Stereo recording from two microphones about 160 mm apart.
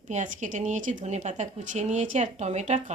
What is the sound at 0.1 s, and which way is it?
Speech, 50° right (ahead or behind).